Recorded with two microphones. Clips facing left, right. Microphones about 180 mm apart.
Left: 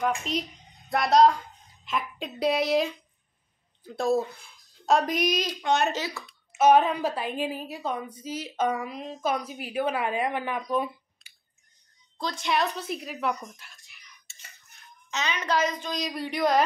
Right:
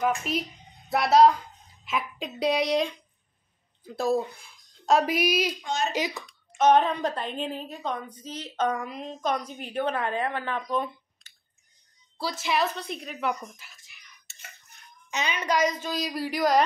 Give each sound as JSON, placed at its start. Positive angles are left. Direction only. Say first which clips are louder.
{"t": 0.0, "sound": "a woman's voice", "louder": "right 1 dB", "side_deg": -5}
{"t": 5.5, "sound": "a woman's voice", "louder": "left 4 dB", "side_deg": 65}
{"t": 5.9, "sound": "a woman's voice", "louder": "right 4 dB", "side_deg": -15}
{"t": 6.2, "sound": "a woman's voice", "louder": "left 2 dB", "side_deg": 5}
{"t": 12.2, "sound": "a woman's voice", "louder": "even", "side_deg": -5}
{"t": 15.0, "sound": "a woman's voice", "louder": "right 1 dB", "side_deg": -15}